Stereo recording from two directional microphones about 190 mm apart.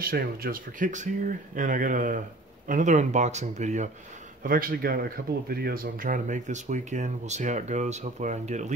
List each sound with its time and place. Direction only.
0.0 s speech: 50° right (ahead or behind)
4.4 s speech: 50° right (ahead or behind)